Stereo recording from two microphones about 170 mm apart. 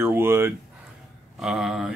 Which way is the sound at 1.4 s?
5° right (ahead or behind).